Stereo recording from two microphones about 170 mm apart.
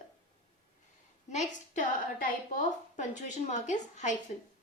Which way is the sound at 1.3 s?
45° left (ahead or behind).